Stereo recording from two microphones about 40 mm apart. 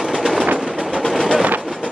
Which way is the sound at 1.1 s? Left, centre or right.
Centre.